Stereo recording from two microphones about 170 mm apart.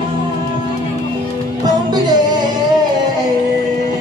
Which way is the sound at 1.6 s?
25° right (ahead or behind).